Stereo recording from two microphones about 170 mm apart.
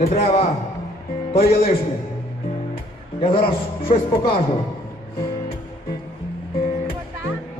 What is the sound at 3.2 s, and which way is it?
Speech, 30° left (ahead or behind).